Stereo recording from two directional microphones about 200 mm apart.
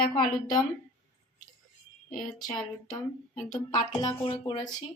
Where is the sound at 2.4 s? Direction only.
20° left (ahead or behind).